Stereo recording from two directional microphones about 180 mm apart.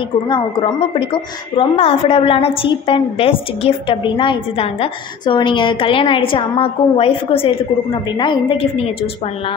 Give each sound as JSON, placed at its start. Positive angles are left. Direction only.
{"t": 0.3, "sound": "a woman's voice", "side_deg": 30}